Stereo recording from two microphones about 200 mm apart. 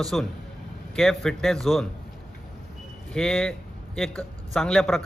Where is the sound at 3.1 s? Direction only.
5° left (ahead or behind).